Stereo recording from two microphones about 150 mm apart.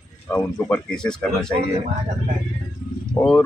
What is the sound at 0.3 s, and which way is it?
Speech, 10° left (ahead or behind).